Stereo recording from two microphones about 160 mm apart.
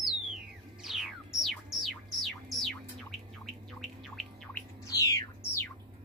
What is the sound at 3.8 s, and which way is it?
Bird, centre (ahead or behind).